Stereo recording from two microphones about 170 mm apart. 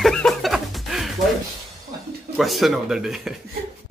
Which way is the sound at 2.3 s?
Centre (ahead or behind).